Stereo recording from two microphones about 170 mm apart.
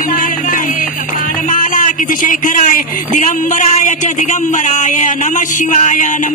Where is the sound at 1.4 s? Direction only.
50° left (ahead or behind).